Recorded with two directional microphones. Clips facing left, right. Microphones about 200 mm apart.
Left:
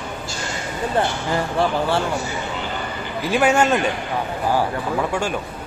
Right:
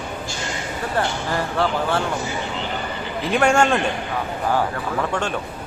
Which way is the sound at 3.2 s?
5° left (ahead or behind).